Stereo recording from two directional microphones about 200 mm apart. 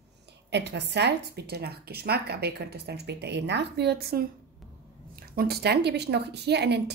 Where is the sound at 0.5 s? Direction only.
60° right (ahead or behind).